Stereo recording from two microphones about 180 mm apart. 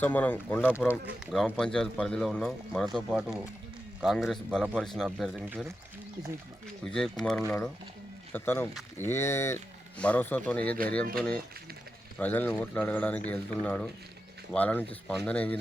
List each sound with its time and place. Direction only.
0.0 s speech: 10° left (ahead or behind)
0.7 s speech: 10° right (ahead or behind)
6.8 s speech: 5° left (ahead or behind)
12.2 s speech: 10° left (ahead or behind)